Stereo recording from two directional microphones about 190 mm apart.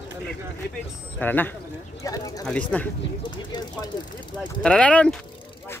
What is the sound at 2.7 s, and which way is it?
Speech, 5° left (ahead or behind).